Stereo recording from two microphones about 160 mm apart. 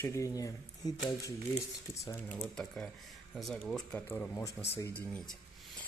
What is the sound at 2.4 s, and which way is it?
Speech, 5° left (ahead or behind).